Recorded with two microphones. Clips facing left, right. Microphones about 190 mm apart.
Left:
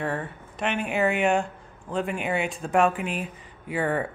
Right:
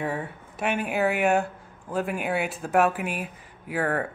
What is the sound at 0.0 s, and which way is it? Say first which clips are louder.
Speech: even; 10° right (ahead or behind).